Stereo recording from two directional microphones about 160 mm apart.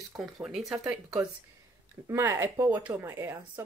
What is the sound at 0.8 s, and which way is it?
A woman's voice, 20° right (ahead or behind).